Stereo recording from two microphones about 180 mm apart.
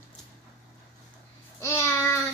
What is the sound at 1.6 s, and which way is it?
Speech, 15° left (ahead or behind).